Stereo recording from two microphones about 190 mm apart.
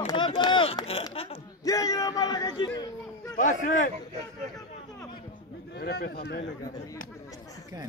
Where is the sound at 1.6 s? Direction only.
15° left (ahead or behind).